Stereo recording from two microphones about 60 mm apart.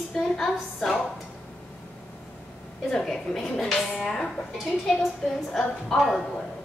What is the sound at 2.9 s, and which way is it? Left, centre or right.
A woman's voice, centre.